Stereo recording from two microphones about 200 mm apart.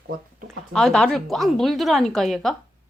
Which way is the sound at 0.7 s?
Centre (ahead or behind).